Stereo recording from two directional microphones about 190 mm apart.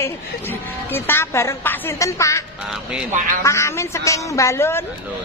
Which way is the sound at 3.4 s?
15° left (ahead or behind).